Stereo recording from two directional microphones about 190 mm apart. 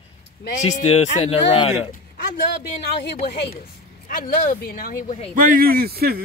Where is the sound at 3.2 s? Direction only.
55° left (ahead or behind).